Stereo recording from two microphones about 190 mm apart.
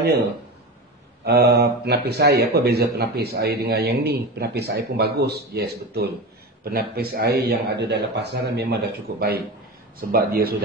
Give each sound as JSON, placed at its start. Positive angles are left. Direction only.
{"t": 1.2, "sound": "a man's voice", "side_deg": -55}